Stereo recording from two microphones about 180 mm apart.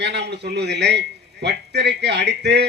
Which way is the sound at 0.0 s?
70° right (ahead or behind).